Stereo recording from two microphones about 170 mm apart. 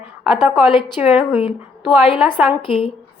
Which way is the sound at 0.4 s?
Centre (ahead or behind).